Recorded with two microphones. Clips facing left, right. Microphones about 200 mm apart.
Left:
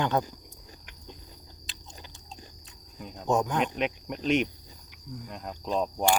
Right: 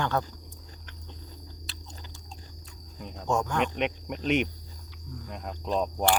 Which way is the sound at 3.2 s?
20° left (ahead or behind).